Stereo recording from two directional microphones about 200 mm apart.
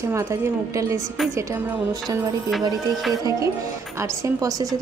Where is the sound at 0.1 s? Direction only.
15° right (ahead or behind).